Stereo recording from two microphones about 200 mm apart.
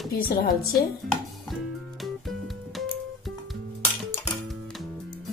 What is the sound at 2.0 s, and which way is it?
Music, centre (ahead or behind).